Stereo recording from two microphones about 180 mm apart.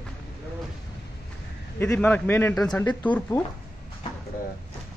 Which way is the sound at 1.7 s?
10° left (ahead or behind).